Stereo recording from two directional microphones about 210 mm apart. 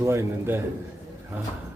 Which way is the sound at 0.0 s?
15° right (ahead or behind).